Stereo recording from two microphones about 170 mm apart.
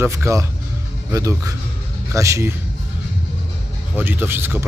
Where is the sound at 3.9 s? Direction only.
10° right (ahead or behind).